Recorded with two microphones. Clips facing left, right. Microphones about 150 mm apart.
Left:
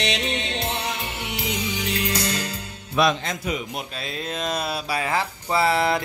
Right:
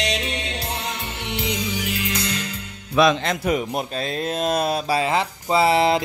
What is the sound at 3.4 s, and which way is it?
Speech, 45° right (ahead or behind).